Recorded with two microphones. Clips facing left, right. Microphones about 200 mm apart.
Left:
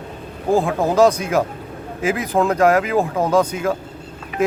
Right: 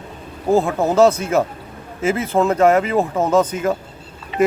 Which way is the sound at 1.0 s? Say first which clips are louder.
Right 1 dB; 15° left (ahead or behind).